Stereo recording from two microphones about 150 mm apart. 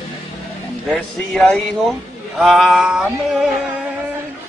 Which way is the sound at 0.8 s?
5° left (ahead or behind).